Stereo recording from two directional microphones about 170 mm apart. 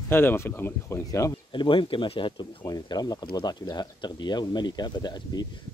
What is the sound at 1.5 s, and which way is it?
Speech, 30° left (ahead or behind).